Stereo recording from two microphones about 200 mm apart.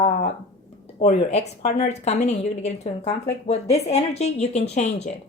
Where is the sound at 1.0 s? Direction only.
35° left (ahead or behind).